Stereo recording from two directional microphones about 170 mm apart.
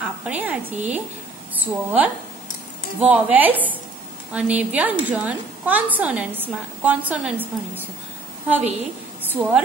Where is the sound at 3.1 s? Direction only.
10° right (ahead or behind).